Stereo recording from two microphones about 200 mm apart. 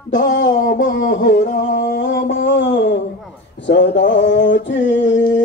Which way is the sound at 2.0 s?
65° left (ahead or behind).